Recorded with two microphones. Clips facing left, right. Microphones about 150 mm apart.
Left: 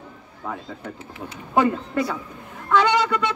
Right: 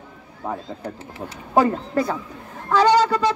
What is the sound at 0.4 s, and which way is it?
A man's voice, 25° right (ahead or behind).